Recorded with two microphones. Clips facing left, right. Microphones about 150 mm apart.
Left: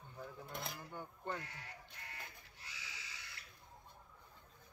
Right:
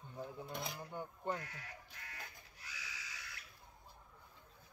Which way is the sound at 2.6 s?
25° left (ahead or behind).